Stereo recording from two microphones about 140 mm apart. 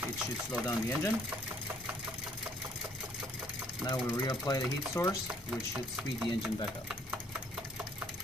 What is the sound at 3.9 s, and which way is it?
Speech, 25° left (ahead or behind).